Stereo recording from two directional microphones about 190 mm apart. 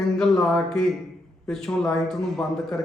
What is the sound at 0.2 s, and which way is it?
Speech, 5° left (ahead or behind).